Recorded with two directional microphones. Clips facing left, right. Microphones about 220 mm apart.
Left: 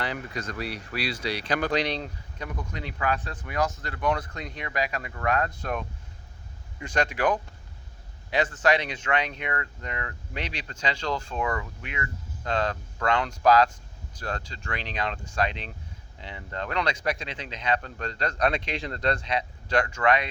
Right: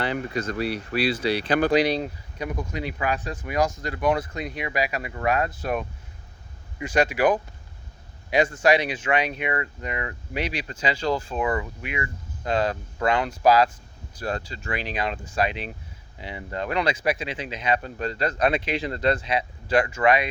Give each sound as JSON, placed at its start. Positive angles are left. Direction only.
{"t": 0.0, "sound": "speech", "side_deg": -30}
{"t": 0.6, "sound": "speech", "side_deg": -5}
{"t": 1.2, "sound": "speech", "side_deg": -30}
{"t": 1.7, "sound": "speech", "side_deg": -10}